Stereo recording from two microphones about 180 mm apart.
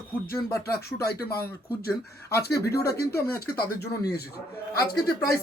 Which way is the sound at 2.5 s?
60° left (ahead or behind).